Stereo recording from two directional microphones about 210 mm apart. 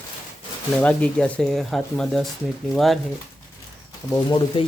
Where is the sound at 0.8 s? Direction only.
5° left (ahead or behind).